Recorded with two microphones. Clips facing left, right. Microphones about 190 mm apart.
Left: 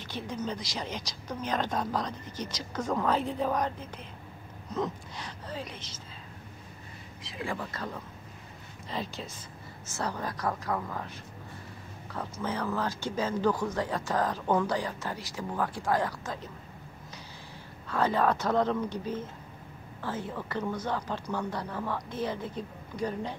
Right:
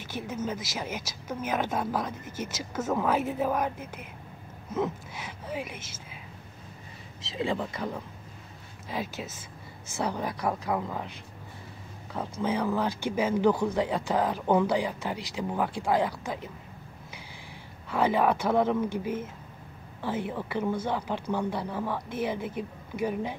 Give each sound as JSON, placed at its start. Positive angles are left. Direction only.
{"t": 0.0, "sound": "a woman's voice", "side_deg": -5}
{"t": 7.3, "sound": "a woman's voice", "side_deg": -20}
{"t": 12.1, "sound": "a woman's voice", "side_deg": -15}
{"t": 17.8, "sound": "a woman's voice", "side_deg": -15}